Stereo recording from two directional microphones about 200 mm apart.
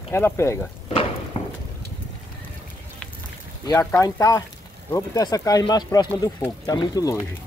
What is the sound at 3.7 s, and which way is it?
Speech, 15° left (ahead or behind).